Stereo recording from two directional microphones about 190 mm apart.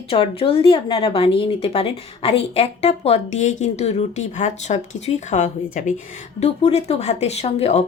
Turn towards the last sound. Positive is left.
turn(degrees=35)  # may be behind; listen again after turning